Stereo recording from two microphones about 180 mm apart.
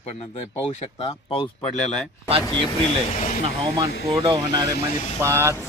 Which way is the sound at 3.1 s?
45° left (ahead or behind).